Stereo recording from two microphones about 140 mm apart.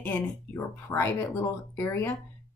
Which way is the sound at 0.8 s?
15° left (ahead or behind).